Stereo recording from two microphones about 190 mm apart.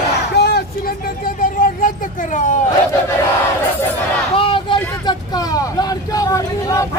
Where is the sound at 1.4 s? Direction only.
45° left (ahead or behind).